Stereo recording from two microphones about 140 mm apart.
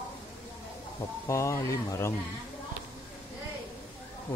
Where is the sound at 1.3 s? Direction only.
20° left (ahead or behind).